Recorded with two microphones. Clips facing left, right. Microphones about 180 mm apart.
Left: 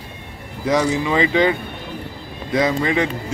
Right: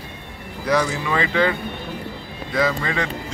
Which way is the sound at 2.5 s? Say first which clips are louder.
Left 4 dB; 20° left (ahead or behind).